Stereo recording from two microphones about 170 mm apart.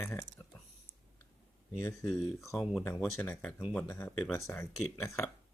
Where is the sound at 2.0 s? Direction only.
Centre (ahead or behind).